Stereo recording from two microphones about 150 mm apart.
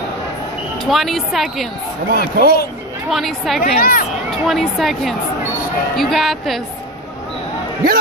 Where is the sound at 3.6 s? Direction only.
85° left.